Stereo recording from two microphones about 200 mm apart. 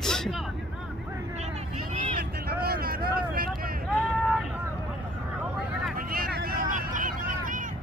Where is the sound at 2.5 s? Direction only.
50° right (ahead or behind).